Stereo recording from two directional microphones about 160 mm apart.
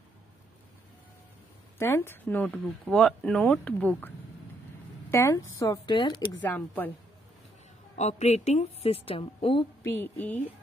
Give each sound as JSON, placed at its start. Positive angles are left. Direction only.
{"t": 1.8, "sound": "speech", "side_deg": 15}
{"t": 5.1, "sound": "speech", "side_deg": 20}
{"t": 6.4, "sound": "speech", "side_deg": 10}
{"t": 8.0, "sound": "a woman's voice", "side_deg": 45}
{"t": 9.8, "sound": "speech", "side_deg": 10}